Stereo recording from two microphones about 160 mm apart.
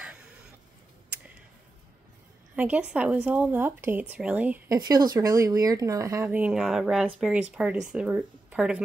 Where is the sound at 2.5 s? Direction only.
10° right (ahead or behind).